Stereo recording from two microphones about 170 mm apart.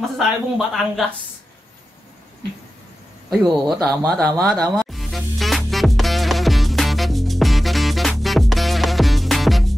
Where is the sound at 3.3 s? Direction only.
Centre (ahead or behind).